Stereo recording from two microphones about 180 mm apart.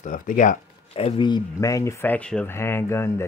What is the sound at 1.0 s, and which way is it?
Speech, 30° left (ahead or behind).